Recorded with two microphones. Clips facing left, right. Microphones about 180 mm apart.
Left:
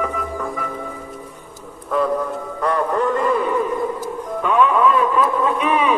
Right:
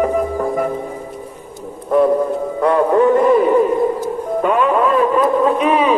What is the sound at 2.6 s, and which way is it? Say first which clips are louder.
Music: right 7 dB; 60° right (ahead or behind).